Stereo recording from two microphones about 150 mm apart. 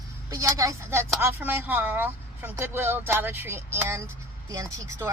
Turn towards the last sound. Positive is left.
turn(degrees=-20)  # may be behind; listen again after turning